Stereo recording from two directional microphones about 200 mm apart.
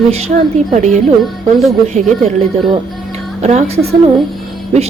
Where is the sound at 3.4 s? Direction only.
35° right (ahead or behind).